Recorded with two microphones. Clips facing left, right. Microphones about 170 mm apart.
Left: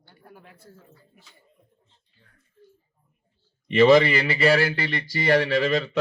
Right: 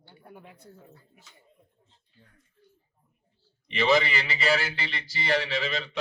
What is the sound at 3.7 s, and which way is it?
A man's voice, 50° left (ahead or behind).